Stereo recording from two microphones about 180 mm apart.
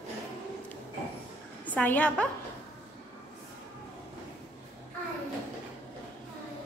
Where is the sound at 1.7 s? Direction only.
10° left (ahead or behind).